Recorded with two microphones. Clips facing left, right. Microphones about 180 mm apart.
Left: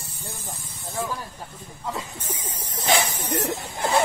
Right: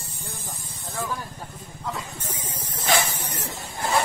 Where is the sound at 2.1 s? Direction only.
10° left (ahead or behind).